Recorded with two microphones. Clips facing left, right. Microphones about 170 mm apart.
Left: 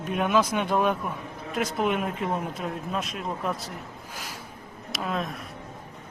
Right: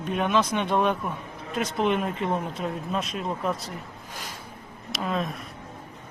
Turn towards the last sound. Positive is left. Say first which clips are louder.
# right 2 dB
turn(degrees=0)  # may be behind; listen again after turning